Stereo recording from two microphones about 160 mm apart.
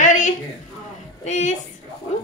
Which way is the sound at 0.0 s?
50° left (ahead or behind).